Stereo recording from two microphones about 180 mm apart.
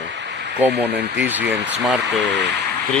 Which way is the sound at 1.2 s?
10° right (ahead or behind).